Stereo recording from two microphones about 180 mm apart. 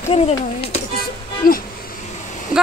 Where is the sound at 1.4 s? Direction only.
55° left (ahead or behind).